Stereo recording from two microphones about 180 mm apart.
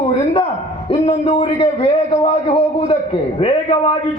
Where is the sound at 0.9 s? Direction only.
30° left (ahead or behind).